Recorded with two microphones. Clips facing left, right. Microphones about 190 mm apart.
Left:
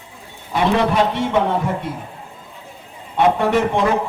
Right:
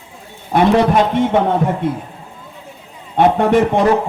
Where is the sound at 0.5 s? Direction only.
50° right (ahead or behind).